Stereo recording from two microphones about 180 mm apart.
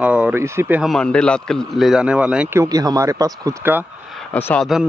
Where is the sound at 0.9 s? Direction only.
5° left (ahead or behind); by 3.8 s 15° right (ahead or behind).